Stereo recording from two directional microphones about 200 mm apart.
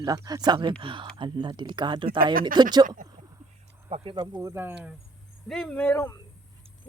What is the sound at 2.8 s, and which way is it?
Speech, 40° right (ahead or behind).